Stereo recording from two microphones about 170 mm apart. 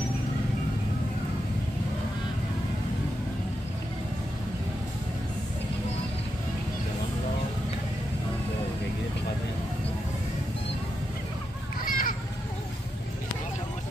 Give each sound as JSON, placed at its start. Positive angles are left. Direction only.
{"t": 11.8, "sound": "children playing", "side_deg": 55}